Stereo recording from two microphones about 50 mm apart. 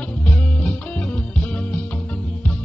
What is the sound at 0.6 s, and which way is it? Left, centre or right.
Music, left.